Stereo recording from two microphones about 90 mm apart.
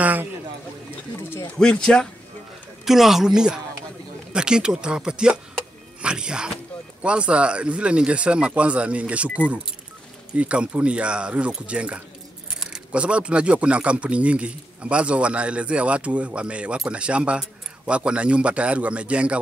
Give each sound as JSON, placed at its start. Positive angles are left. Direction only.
{"t": 0.0, "sound": "a sound", "side_deg": -20}
{"t": 1.5, "sound": "speech", "side_deg": 10}
{"t": 2.8, "sound": "a woman's voice", "side_deg": -5}